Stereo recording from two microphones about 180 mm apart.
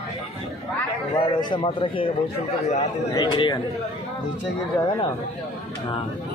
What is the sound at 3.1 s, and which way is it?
Speech, 20° left (ahead or behind).